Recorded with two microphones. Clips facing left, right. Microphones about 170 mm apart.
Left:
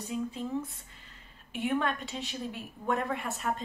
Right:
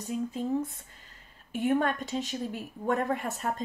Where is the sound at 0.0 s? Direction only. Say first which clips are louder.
Right 3 dB; 45° right (ahead or behind).